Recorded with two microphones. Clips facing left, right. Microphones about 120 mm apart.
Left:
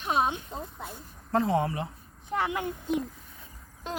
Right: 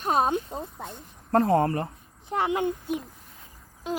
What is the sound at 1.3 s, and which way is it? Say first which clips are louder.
Speech: right 5 dB; 50° right (ahead or behind).